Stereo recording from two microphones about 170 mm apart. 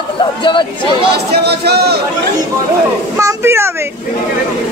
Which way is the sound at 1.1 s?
70° right (ahead or behind).